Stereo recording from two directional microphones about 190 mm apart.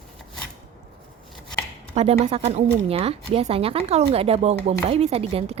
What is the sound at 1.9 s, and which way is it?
Speech, 35° right (ahead or behind).